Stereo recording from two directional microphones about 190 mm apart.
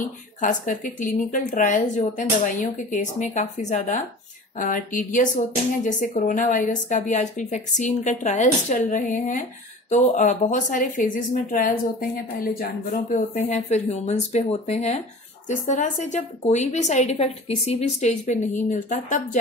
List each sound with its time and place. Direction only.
0.4 s a woman's voice: 45° left (ahead or behind)